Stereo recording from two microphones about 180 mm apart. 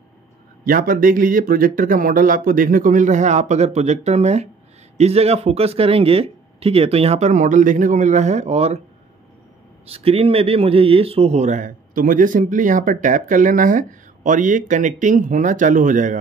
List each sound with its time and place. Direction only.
0.7 s a man's voice: 50° right (ahead or behind)
9.8 s a man's voice: 35° right (ahead or behind)